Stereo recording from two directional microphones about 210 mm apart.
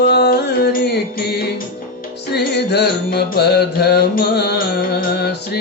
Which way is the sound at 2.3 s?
50° left (ahead or behind).